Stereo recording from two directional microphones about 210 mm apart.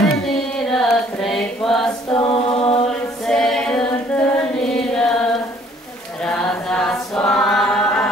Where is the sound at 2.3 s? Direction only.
25° left (ahead or behind).